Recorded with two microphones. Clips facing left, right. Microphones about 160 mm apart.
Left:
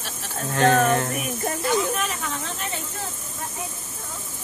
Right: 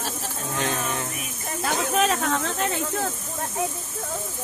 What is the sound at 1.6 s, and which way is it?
Speech, 85° right.